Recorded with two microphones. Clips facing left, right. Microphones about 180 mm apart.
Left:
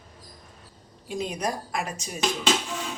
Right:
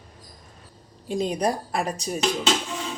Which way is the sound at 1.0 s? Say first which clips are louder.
Right 5 dB; 30° right (ahead or behind).